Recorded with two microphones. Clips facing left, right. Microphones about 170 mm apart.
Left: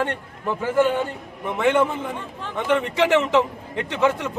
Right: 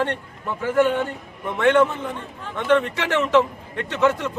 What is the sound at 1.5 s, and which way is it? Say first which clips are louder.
A man's voice: right 2 dB; 10° left (ahead or behind).